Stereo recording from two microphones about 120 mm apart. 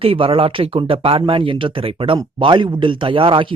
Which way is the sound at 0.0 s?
50° right (ahead or behind).